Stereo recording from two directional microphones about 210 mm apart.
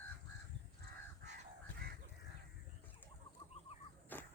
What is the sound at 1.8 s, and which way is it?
Crow, 50° right (ahead or behind).